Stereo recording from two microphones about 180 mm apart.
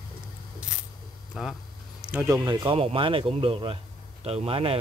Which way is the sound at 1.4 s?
5° right (ahead or behind).